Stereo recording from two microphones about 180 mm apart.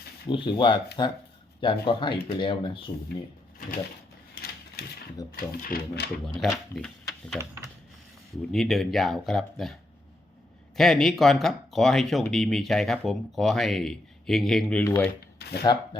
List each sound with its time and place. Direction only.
0.3 s speech: 25° left (ahead or behind)
4.4 s mechanisms: 60° left (ahead or behind)
5.3 s speech: 55° left (ahead or behind)
6.2 s speech: centre (ahead or behind)
8.5 s speech: centre (ahead or behind)
10.8 s speech: centre (ahead or behind)
15.4 s a sound: 65° left (ahead or behind)
15.6 s speech: 25° left (ahead or behind)